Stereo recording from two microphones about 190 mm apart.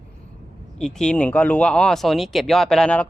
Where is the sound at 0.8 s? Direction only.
5° left (ahead or behind).